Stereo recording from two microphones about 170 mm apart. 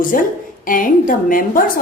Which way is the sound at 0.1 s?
55° left (ahead or behind).